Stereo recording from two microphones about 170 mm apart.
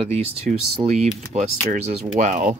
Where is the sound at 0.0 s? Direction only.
35° right (ahead or behind).